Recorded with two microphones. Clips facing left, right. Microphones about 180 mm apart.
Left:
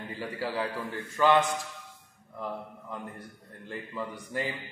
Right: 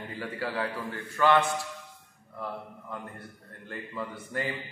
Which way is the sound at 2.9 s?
15° left (ahead or behind).